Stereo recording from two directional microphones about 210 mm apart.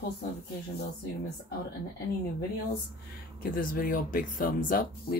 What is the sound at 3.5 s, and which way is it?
Speech, 40° left (ahead or behind).